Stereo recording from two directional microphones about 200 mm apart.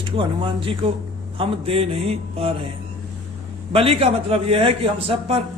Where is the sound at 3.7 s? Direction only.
30° right (ahead or behind).